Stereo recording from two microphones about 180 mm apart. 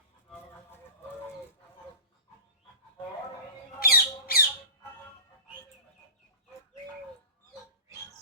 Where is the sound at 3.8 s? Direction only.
55° left (ahead or behind).